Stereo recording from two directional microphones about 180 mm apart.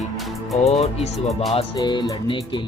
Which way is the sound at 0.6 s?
35° left (ahead or behind).